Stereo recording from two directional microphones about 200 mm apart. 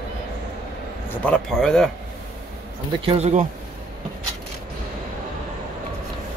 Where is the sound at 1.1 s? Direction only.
5° left (ahead or behind).